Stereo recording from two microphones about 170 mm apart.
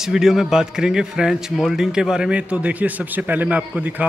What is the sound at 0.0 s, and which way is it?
A man's voice, centre (ahead or behind).